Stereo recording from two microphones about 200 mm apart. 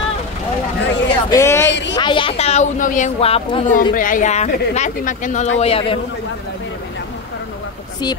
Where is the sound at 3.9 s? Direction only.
40° left (ahead or behind).